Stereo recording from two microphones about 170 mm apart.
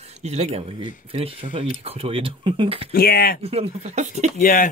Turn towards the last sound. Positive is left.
turn(degrees=55)  # may be behind; listen again after turning